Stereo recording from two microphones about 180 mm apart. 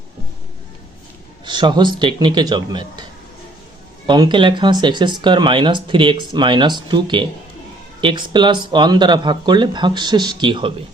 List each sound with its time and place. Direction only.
1.5 s speech: 25° right (ahead or behind)